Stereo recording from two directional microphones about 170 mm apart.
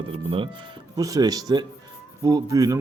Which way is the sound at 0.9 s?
20° right (ahead or behind).